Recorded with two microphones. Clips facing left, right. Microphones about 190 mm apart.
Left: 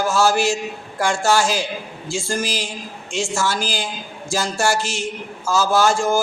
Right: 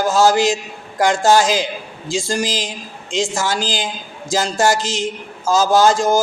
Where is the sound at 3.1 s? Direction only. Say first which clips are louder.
Right 2 dB; 20° right (ahead or behind).